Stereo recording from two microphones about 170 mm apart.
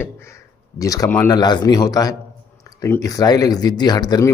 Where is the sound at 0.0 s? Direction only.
15° left (ahead or behind).